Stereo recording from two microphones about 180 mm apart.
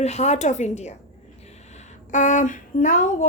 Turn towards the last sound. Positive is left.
turn(degrees=45)  # may be behind; listen again after turning